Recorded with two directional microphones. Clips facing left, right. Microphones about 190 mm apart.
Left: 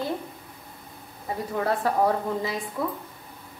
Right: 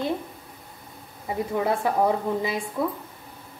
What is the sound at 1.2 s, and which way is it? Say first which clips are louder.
A woman's voice: right 2 dB; 15° right (ahead or behind).